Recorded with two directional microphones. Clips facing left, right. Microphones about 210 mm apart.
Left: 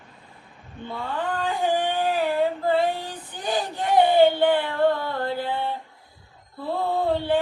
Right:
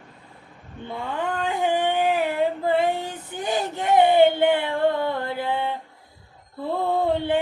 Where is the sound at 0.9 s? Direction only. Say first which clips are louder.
Right 1 dB; 20° right (ahead or behind).